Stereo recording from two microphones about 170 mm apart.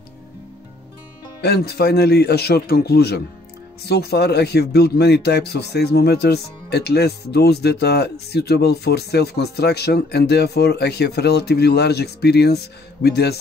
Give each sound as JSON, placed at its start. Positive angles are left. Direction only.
{"t": 1.4, "sound": "speech", "side_deg": 70}